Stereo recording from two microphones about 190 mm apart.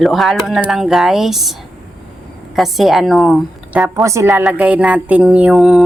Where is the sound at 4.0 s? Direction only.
15° right (ahead or behind).